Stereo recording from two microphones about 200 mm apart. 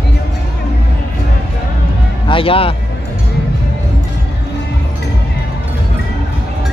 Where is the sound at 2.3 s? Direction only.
25° left (ahead or behind).